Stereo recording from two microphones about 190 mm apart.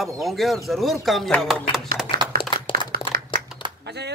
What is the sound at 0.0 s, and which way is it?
Speech, centre (ahead or behind).